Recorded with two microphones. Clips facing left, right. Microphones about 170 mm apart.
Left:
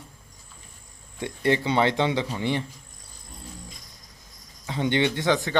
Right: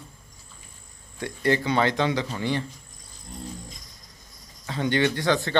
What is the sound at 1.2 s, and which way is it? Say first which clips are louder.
A man's voice: even; 25° left (ahead or behind).